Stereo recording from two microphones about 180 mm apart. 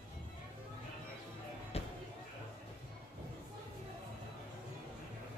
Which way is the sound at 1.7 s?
35° left (ahead or behind).